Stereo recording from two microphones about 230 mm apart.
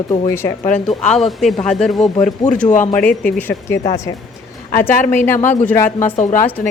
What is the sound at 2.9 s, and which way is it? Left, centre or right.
Speech, centre.